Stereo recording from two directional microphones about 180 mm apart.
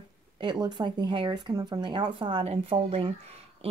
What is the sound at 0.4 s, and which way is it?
Speech, 25° right (ahead or behind).